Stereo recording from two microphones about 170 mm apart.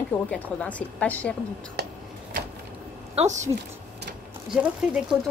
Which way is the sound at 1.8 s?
70° right (ahead or behind).